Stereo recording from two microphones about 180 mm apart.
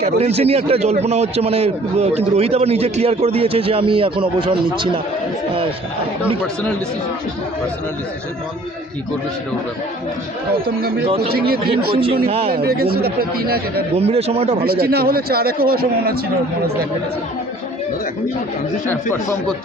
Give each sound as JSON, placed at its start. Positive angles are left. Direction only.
{"t": 0.0, "sound": "a man's voice", "side_deg": -35}
{"t": 11.3, "sound": "speech", "side_deg": -60}
{"t": 11.9, "sound": "a man's voice", "side_deg": -30}
{"t": 12.5, "sound": "speech", "side_deg": -60}
{"t": 13.9, "sound": "a man's voice", "side_deg": -35}
{"t": 14.6, "sound": "speech", "side_deg": -60}